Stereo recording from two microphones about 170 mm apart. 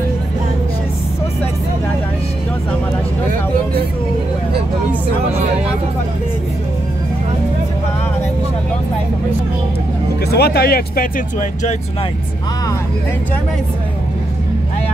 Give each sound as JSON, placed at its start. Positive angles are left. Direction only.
{"t": 10.2, "sound": "speech", "side_deg": 70}